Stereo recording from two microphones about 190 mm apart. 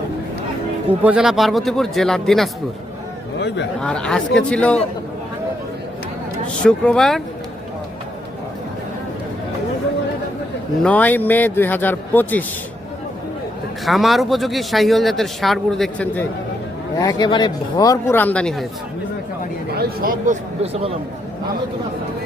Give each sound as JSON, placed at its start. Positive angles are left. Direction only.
{"t": 1.0, "sound": "a man's voice", "side_deg": -5}
{"t": 3.8, "sound": "a man's voice", "side_deg": 5}
{"t": 6.6, "sound": "a man's voice", "side_deg": 5}
{"t": 10.8, "sound": "a man's voice", "side_deg": 10}
{"t": 13.8, "sound": "a man's voice", "side_deg": 0}
{"t": 17.0, "sound": "a man's voice", "side_deg": 20}
{"t": 19.7, "sound": "speech", "side_deg": -55}
{"t": 20.6, "sound": "a man's voice", "side_deg": -35}